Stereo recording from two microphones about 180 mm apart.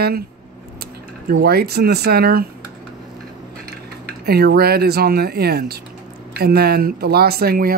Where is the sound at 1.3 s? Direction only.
60° right (ahead or behind).